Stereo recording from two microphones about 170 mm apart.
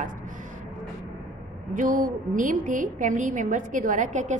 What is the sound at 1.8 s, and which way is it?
A woman's voice, 55° right (ahead or behind).